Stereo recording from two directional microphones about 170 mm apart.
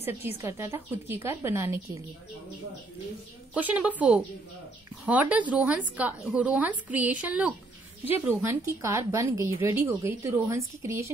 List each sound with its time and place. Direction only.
0.0 s a woman's voice: 15° right (ahead or behind)
3.5 s a woman's voice: 10° right (ahead or behind)